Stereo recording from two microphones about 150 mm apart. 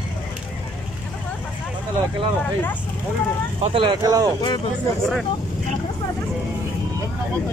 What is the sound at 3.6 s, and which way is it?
Speech, 35° right (ahead or behind).